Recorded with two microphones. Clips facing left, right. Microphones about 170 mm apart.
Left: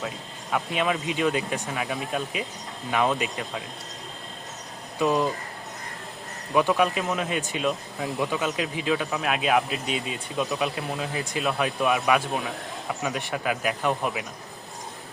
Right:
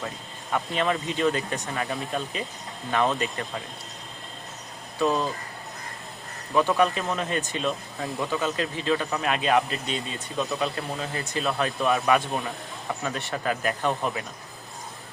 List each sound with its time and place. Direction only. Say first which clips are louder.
0.5 s speech: even; 10° left (ahead or behind)
4.9 s speech: left 1 dB; 15° left (ahead or behind)
6.5 s speech: even; 10° left (ahead or behind)